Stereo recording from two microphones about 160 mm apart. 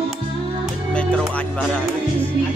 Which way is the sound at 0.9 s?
5° left (ahead or behind).